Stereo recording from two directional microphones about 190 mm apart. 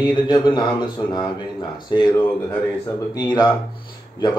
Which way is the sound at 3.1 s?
20° left (ahead or behind).